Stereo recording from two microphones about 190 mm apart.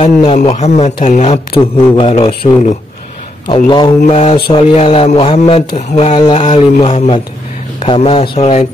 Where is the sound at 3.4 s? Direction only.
25° left (ahead or behind).